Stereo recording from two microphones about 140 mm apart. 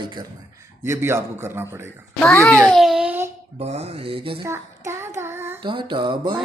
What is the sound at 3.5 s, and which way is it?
Speech, 50° right (ahead or behind).